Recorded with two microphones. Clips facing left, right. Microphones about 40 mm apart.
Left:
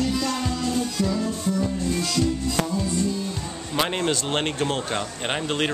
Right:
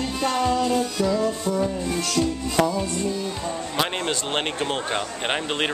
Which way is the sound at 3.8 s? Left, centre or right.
Centre.